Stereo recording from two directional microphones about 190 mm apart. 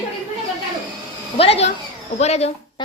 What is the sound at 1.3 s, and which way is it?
A woman's voice, 30° left (ahead or behind).